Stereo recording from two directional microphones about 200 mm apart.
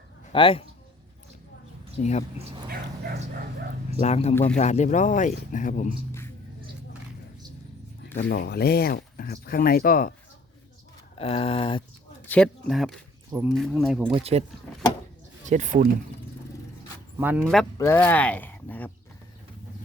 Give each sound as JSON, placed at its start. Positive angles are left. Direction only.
{"t": 0.3, "sound": "speech", "side_deg": 25}
{"t": 2.0, "sound": "speech", "side_deg": 35}
{"t": 3.9, "sound": "speech", "side_deg": 35}
{"t": 8.3, "sound": "speech", "side_deg": 55}
{"t": 11.2, "sound": "speech", "side_deg": 30}
{"t": 12.2, "sound": "speech", "side_deg": 5}
{"t": 14.1, "sound": "speech", "side_deg": -30}
{"t": 15.4, "sound": "speech", "side_deg": -35}
{"t": 17.2, "sound": "a man's voice", "side_deg": -10}
{"t": 17.7, "sound": "speech", "side_deg": 10}